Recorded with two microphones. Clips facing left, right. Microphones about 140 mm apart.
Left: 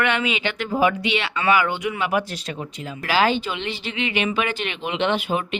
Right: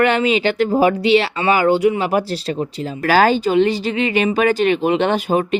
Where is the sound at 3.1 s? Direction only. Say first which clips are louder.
Right 6 dB; 45° right (ahead or behind).